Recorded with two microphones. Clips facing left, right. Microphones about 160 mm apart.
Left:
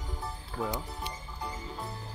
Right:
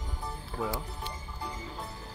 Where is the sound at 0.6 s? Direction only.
Centre (ahead or behind).